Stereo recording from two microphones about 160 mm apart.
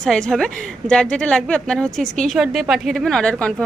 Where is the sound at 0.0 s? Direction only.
Centre (ahead or behind).